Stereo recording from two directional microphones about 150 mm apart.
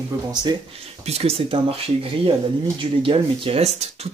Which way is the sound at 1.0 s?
45° right (ahead or behind).